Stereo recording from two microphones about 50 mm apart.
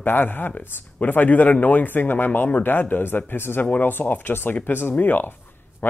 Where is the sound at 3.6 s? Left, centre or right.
Left.